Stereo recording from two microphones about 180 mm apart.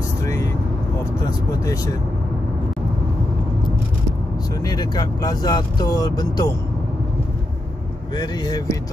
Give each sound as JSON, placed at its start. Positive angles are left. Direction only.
{"t": 0.2, "sound": "vehicle", "side_deg": 20}
{"t": 4.6, "sound": "speech", "side_deg": 20}
{"t": 8.2, "sound": "speech", "side_deg": 20}